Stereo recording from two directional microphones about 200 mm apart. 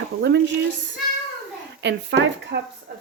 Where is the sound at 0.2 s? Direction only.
60° right (ahead or behind).